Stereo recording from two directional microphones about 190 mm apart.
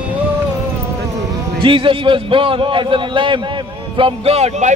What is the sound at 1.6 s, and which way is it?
A man's voice, 30° right (ahead or behind).